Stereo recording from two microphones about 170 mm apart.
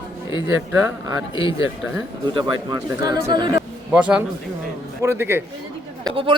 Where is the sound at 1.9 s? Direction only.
30° right (ahead or behind).